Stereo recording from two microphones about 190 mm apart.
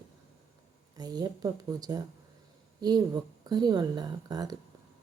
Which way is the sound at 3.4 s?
20° right (ahead or behind).